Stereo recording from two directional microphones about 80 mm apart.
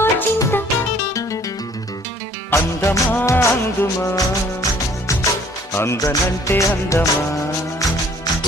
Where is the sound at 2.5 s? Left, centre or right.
Left.